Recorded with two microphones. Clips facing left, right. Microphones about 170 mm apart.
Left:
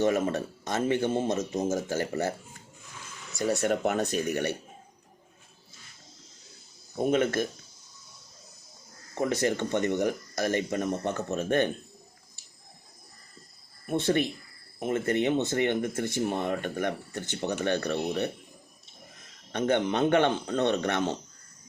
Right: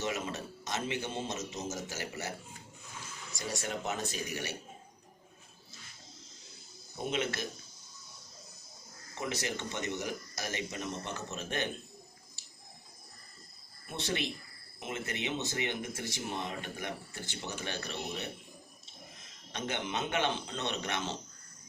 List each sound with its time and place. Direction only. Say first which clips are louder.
0.0 s speech: left 11 dB; 55° left (ahead or behind)
3.3 s speech: left 11 dB; 60° left (ahead or behind)
7.0 s speech: left 10 dB; 50° left (ahead or behind)
9.1 s speech: left 10 dB; 55° left (ahead or behind)
13.9 s speech: left 10 dB; 50° left (ahead or behind)
19.5 s speech: left 11 dB; 55° left (ahead or behind)